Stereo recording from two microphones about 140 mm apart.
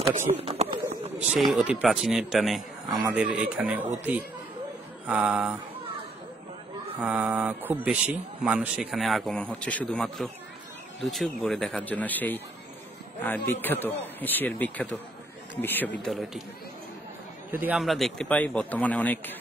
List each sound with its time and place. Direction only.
0.1 s run: 55° right (ahead or behind)
1.3 s a man's voice: 5° right (ahead or behind)
5.0 s speech: 5° right (ahead or behind)
7.1 s a man's voice: 10° right (ahead or behind); by 16.1 s 15° left (ahead or behind)
16.1 s a man's voice: centre (ahead or behind)
17.5 s speech: 15° right (ahead or behind)
17.7 s speech: centre (ahead or behind)